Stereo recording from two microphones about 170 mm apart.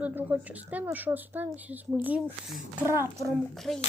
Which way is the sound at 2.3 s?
Centre (ahead or behind).